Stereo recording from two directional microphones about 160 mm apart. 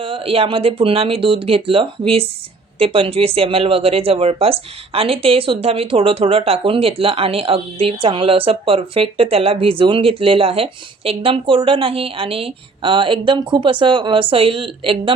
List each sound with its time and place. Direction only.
0.0 s speech: 35° right (ahead or behind)